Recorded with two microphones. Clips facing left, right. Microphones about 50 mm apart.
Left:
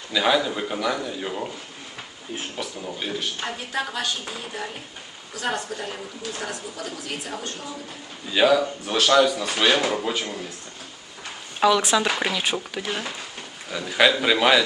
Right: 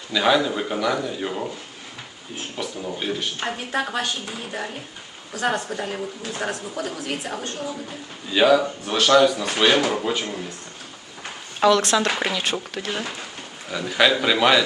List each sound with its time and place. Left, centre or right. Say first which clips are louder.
0.1 s speech: right 2 dB; centre
2.6 s speech: right 4 dB; centre
2.9 s speech: right 3 dB; centre
3.7 s a woman's voice: right 3 dB; right
5.5 s a woman's voice: right 3 dB; right
8.3 s speech: right 2 dB; centre
11.6 s speech: right 1 dB; centre